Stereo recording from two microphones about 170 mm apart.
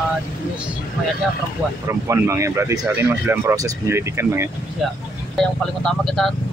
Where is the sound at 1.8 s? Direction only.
15° right (ahead or behind).